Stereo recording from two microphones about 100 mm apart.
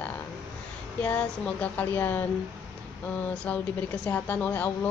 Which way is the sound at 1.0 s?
15° left (ahead or behind).